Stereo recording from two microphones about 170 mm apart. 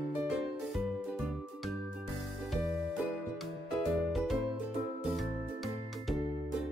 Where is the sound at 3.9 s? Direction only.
Centre (ahead or behind).